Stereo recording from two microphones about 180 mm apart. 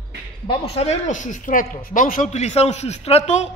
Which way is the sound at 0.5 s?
35° left (ahead or behind).